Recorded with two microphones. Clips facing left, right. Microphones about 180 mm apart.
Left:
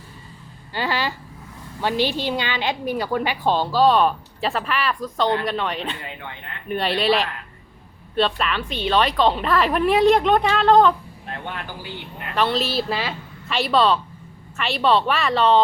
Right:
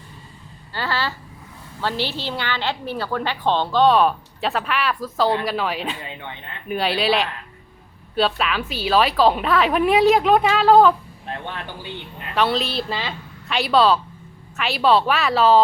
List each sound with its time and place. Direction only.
0.7 s a woman's voice: 15° left (ahead or behind); by 10.9 s 5° right (ahead or behind)
12.3 s a woman's voice: centre (ahead or behind)